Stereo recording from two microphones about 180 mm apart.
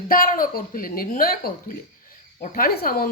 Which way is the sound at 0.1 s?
50° left (ahead or behind).